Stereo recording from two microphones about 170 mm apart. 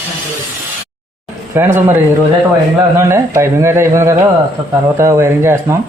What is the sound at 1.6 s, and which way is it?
Speech, 10° right (ahead or behind).